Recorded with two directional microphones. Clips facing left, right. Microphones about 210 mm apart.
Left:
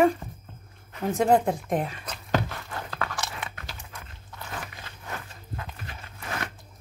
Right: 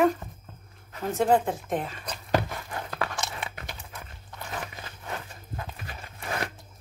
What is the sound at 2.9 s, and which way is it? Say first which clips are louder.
Crunch: right 1 dB; 30° right (ahead or behind).